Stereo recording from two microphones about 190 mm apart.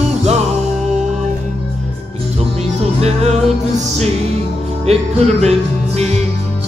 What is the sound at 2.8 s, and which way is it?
Music, 35° right (ahead or behind).